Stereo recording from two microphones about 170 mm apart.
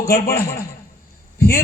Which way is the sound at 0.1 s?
60° left (ahead or behind).